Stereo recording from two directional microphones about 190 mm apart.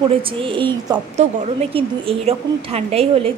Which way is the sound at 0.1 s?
30° right (ahead or behind).